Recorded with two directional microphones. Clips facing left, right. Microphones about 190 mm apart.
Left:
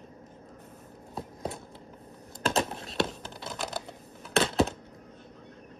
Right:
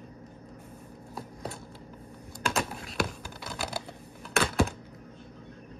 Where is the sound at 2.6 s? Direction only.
25° left (ahead or behind).